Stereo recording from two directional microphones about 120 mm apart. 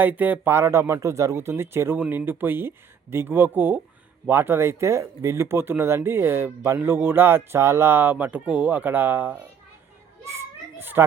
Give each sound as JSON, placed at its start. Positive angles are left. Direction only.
{"t": 0.0, "sound": "speech", "side_deg": -15}
{"t": 10.2, "sound": "children playing", "side_deg": -20}